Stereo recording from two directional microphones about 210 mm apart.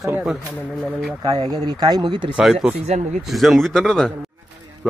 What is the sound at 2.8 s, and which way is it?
Speech, 35° right (ahead or behind).